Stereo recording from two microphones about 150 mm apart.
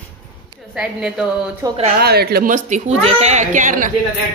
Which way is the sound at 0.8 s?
5° right (ahead or behind).